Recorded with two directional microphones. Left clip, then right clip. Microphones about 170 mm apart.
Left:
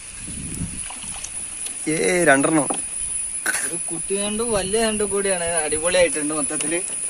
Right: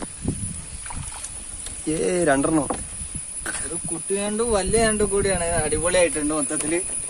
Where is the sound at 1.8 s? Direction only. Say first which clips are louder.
Left 4 dB; centre (ahead or behind).